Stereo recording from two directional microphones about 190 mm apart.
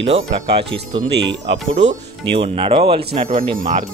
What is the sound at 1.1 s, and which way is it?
Speech, 65° right (ahead or behind).